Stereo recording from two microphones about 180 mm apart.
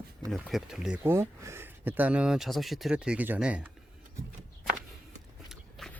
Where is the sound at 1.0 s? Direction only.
15° right (ahead or behind).